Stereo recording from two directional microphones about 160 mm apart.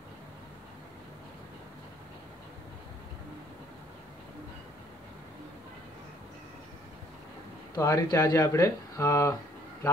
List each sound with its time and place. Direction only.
7.7 s speech: 20° left (ahead or behind)